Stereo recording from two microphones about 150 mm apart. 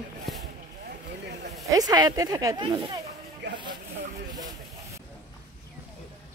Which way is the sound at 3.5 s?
30° right (ahead or behind).